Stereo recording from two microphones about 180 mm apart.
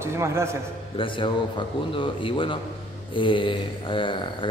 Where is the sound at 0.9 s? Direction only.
30° left (ahead or behind).